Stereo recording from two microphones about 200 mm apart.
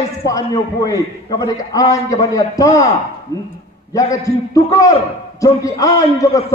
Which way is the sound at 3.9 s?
15° left (ahead or behind).